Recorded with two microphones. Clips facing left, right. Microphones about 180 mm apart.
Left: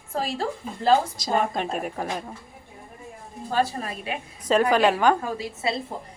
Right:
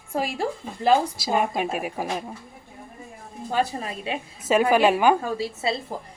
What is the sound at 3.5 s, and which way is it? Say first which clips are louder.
Speech: even; 20° right (ahead or behind).